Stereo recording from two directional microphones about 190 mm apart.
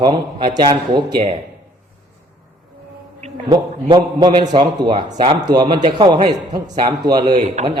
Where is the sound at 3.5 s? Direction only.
25° right (ahead or behind).